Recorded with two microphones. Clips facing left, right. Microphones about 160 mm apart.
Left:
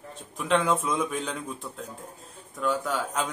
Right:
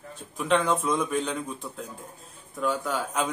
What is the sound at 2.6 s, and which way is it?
Speech, centre (ahead or behind).